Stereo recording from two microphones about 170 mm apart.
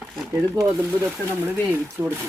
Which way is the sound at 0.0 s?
15° right (ahead or behind).